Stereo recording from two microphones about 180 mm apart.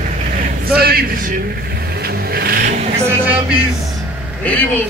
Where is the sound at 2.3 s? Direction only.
55° right (ahead or behind).